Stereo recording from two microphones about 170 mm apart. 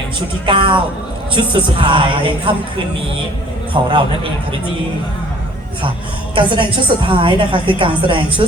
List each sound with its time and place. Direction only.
0.4 s speech: 30° right (ahead or behind)
3.8 s a man's voice: 30° right (ahead or behind)
6.3 s speech: 30° right (ahead or behind)